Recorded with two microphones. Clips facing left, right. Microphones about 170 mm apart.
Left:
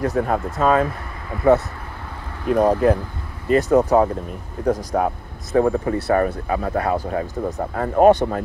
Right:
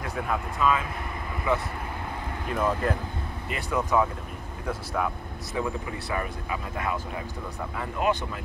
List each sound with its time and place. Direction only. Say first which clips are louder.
0.0 s speech: left 9 dB; 40° left (ahead or behind)